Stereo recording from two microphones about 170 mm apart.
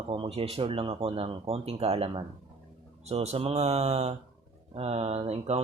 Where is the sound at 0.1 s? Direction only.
35° right (ahead or behind).